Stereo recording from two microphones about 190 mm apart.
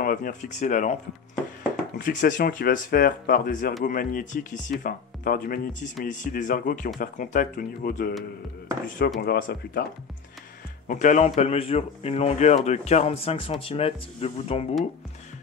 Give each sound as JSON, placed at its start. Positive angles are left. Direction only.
{"t": 0.0, "sound": "a man's voice", "side_deg": 45}
{"t": 2.0, "sound": "speech", "side_deg": 45}
{"t": 10.9, "sound": "a man's voice", "side_deg": 40}